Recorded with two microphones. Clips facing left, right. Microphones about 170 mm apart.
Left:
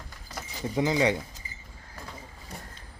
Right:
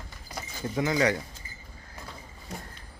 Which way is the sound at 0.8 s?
25° left (ahead or behind).